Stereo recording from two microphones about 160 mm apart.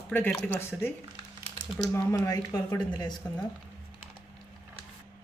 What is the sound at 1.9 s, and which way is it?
Speech, 20° left (ahead or behind).